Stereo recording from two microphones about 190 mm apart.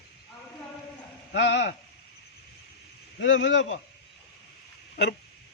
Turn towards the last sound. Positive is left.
turn(degrees=60)  # may be behind; listen again after turning